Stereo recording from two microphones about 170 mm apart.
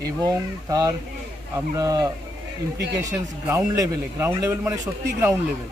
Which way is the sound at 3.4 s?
15° right (ahead or behind).